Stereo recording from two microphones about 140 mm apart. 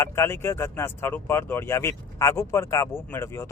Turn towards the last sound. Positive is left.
turn(degrees=20)  # may be behind; listen again after turning